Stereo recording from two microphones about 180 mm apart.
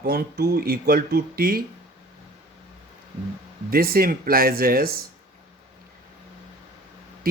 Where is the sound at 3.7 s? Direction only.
55° right (ahead or behind).